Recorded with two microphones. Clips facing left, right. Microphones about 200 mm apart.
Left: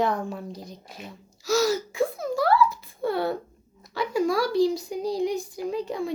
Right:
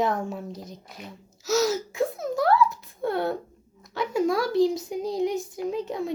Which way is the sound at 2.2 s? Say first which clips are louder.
Right 1 dB; centre (ahead or behind).